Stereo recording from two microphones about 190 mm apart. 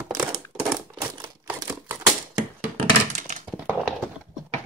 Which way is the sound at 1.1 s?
15° right (ahead or behind).